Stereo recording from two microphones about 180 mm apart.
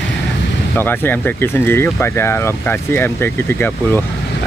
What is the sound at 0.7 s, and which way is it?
Speech, 10° left (ahead or behind).